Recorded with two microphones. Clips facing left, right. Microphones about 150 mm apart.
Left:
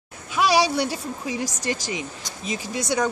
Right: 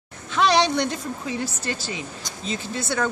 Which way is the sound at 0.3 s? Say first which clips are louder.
Even; 10° left (ahead or behind).